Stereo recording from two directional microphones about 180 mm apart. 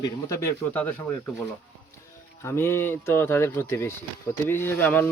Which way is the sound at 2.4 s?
15° left (ahead or behind).